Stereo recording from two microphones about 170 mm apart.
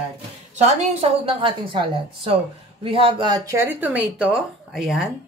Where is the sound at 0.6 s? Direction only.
40° right (ahead or behind).